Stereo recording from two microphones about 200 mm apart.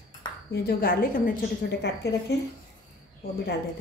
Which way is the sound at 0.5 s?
50° left (ahead or behind).